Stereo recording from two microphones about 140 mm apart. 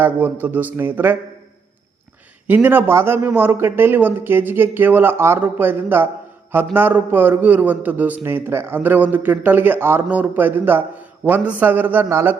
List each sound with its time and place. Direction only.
0.0 s a man's voice: 15° right (ahead or behind)
2.5 s a man's voice: 15° right (ahead or behind)